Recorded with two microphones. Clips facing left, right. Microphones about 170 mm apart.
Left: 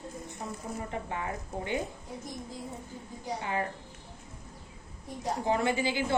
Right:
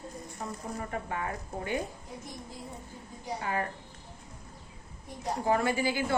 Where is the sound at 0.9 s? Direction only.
20° left (ahead or behind).